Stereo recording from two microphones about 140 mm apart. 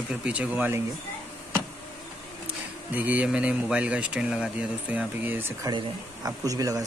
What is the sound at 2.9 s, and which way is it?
Speech, 10° right (ahead or behind).